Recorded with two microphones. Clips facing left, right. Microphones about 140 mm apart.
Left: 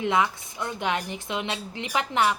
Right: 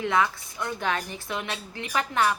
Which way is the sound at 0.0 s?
20° left (ahead or behind).